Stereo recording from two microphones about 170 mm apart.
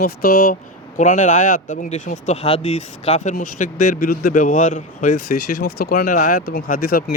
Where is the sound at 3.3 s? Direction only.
55° left (ahead or behind).